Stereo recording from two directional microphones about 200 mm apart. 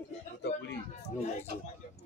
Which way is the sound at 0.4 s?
60° left (ahead or behind).